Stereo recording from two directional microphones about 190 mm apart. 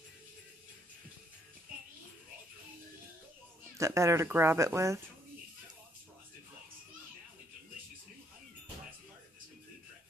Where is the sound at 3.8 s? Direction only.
15° right (ahead or behind).